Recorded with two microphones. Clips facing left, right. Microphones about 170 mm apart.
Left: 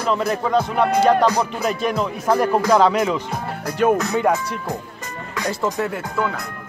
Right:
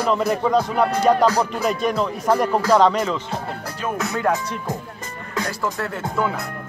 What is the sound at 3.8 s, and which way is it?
Music, 60° left (ahead or behind).